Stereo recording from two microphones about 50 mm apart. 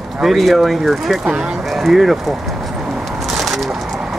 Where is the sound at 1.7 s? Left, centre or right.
Centre.